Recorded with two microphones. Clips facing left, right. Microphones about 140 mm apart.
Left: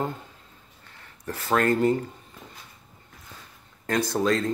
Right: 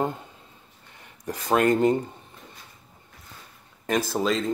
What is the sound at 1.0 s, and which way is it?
Speech, 15° right (ahead or behind).